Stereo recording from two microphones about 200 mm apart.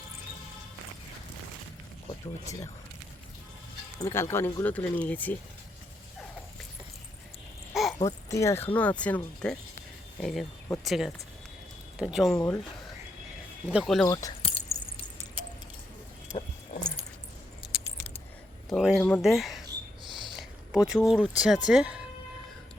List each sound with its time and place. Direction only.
4.0 s speech: 15° left (ahead or behind)
7.7 s a sound: centre (ahead or behind)
8.0 s speech: 15° left (ahead or behind); by 12.3 s centre (ahead or behind)
12.3 s speech: 15° left (ahead or behind)
13.7 s speech: centre (ahead or behind)
14.1 s speech: 15° left (ahead or behind)
14.4 s keys jangling: 30° left (ahead or behind)
18.7 s speech: centre (ahead or behind)
20.1 s a sound: 25° right (ahead or behind)
20.3 s speech: centre (ahead or behind)